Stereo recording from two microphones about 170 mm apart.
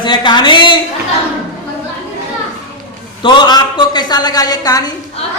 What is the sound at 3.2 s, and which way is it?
A man's voice, 25° left (ahead or behind).